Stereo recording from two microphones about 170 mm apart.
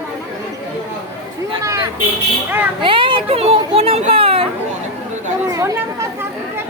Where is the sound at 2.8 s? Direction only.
30° right (ahead or behind).